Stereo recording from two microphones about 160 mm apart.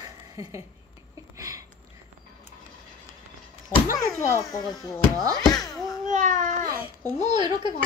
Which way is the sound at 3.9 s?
20° left (ahead or behind).